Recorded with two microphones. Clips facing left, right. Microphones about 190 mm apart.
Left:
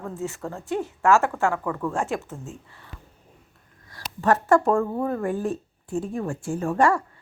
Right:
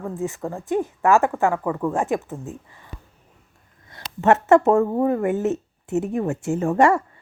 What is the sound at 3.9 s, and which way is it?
A woman's voice, 25° right (ahead or behind).